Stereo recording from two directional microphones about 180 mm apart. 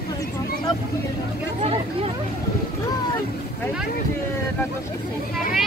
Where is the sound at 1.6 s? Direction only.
35° right (ahead or behind).